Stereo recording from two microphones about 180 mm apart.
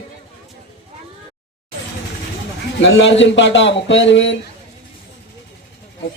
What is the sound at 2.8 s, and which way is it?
Speech, 90° left.